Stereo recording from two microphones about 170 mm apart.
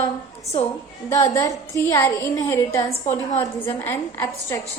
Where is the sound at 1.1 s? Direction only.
20° left (ahead or behind).